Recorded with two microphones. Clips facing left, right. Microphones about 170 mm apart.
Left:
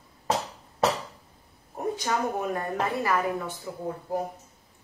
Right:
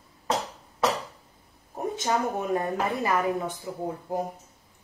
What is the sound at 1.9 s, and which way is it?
A woman's voice, 20° right (ahead or behind).